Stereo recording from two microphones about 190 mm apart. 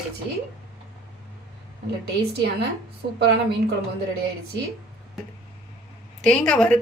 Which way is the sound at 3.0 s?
55° right (ahead or behind).